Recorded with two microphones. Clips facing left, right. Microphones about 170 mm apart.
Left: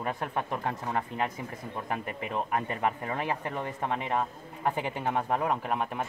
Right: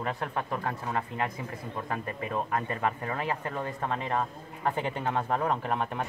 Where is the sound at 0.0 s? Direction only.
15° left (ahead or behind).